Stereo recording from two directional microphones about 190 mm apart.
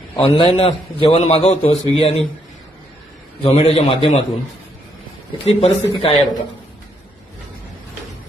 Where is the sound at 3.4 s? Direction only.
30° left (ahead or behind).